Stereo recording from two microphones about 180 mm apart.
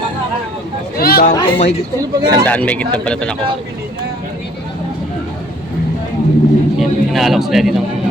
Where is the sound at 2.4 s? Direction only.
10° left (ahead or behind).